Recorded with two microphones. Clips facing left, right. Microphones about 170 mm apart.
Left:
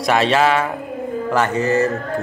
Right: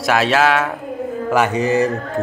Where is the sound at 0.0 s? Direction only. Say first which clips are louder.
Even; centre (ahead or behind).